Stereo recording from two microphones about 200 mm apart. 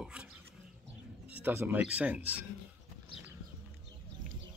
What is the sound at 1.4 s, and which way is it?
Speech, 10° right (ahead or behind).